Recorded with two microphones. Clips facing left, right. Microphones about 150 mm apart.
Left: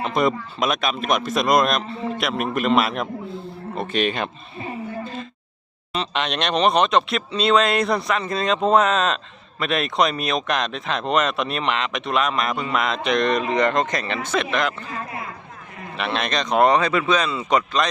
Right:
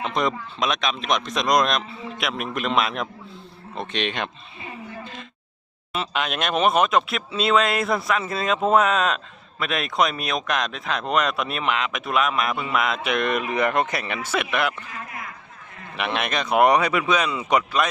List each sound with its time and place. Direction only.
0.0 s speech: 5° left (ahead or behind)
5.9 s speech: 5° right (ahead or behind)
14.8 s a sound: 30° left (ahead or behind)
16.0 s speech: 15° right (ahead or behind)